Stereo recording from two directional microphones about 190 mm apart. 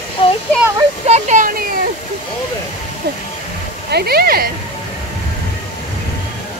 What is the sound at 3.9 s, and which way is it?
Speech, 55° right (ahead or behind).